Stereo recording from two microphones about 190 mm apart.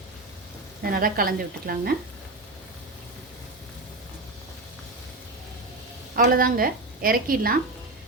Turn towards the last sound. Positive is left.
turn(degrees=-50)  # may be behind; listen again after turning